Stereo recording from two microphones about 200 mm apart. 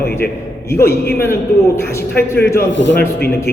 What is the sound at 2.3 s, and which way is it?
Speech, 50° left (ahead or behind).